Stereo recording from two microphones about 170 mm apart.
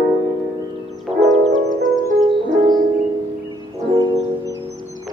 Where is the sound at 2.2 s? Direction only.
25° right (ahead or behind).